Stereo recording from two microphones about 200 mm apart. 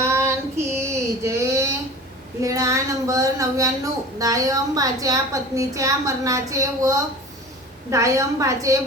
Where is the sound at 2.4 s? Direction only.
15° right (ahead or behind).